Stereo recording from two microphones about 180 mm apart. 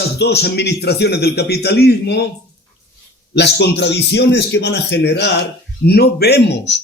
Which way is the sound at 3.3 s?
70° left (ahead or behind).